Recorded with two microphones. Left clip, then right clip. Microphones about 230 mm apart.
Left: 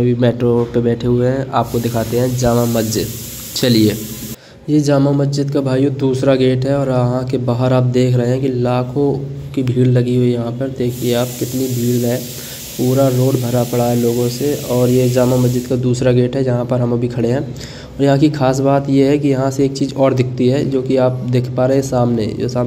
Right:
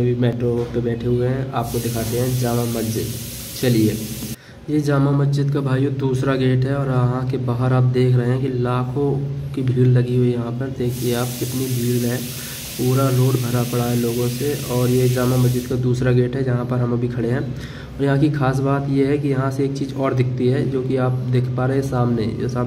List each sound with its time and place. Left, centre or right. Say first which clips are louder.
0.0 s speech: left 6 dB; left
5.0 s speech: left 5 dB; centre
12.9 s speech: left 7 dB; centre